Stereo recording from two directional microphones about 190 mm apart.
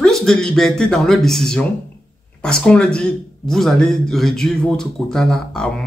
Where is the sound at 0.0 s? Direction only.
Centre (ahead or behind).